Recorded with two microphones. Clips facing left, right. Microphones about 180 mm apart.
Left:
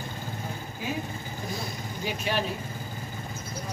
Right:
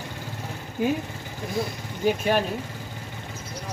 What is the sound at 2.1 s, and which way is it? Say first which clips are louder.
Speech: right 8 dB; 50° right (ahead or behind).